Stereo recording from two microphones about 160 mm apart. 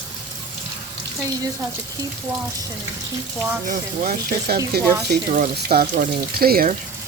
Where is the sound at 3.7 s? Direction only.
60° right (ahead or behind).